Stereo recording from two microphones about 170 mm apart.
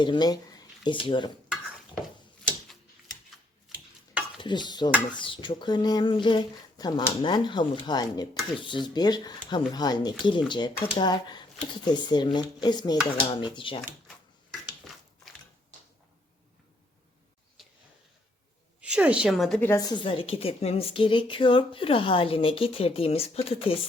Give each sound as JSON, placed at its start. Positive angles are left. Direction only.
{"t": 0.0, "sound": "speech", "side_deg": 25}
{"t": 1.5, "sound": "stir", "side_deg": -5}
{"t": 4.4, "sound": "speech", "side_deg": 25}
{"t": 17.6, "sound": "a sound", "side_deg": 0}
{"t": 18.8, "sound": "a woman's voice", "side_deg": -5}